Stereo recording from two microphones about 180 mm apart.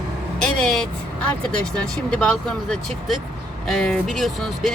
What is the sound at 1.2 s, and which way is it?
Speech, 5° left (ahead or behind).